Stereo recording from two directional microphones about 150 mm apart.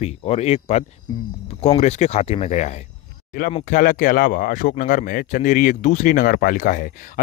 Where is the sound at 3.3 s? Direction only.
60° left (ahead or behind).